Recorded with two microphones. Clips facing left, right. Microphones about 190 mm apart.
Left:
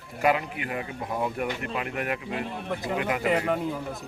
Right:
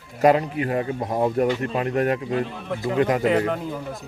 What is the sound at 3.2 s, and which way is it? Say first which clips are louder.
Speech: right 4 dB; 5° left (ahead or behind).